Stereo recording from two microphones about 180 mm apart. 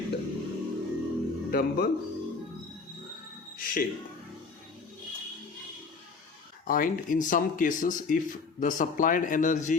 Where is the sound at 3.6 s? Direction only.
55° left (ahead or behind).